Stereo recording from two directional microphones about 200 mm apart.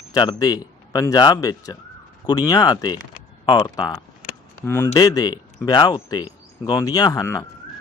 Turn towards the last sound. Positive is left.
turn(degrees=15)  # may be behind; listen again after turning